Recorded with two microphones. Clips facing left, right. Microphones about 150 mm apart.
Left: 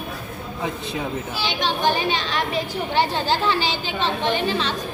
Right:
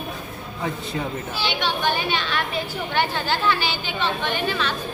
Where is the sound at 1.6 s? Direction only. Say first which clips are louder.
Left 4 dB; 35° left (ahead or behind).